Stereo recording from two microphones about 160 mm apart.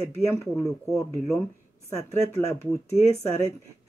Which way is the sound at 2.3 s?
15° left (ahead or behind).